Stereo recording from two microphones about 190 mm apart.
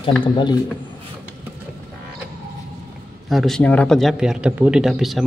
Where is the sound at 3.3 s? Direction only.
Centre (ahead or behind).